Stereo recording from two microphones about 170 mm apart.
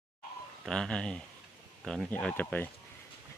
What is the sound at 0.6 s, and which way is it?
Speech, 5° left (ahead or behind).